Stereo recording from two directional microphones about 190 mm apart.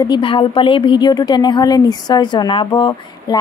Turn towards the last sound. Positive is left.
turn(degrees=20)  # may be behind; listen again after turning